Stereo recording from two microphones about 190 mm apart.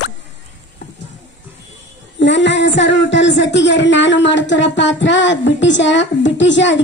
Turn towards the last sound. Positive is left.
turn(degrees=70)  # may be behind; listen again after turning